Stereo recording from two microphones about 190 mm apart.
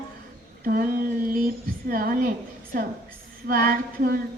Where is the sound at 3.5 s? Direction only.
50° right (ahead or behind).